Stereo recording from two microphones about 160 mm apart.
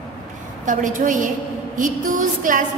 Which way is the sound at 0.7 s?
55° right (ahead or behind).